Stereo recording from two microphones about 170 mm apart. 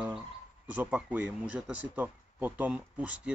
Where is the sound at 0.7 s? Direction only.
5° right (ahead or behind).